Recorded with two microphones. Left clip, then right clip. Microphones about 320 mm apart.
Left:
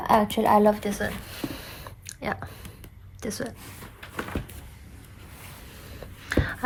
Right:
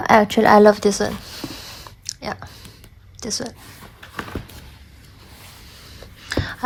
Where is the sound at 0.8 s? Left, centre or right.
Centre.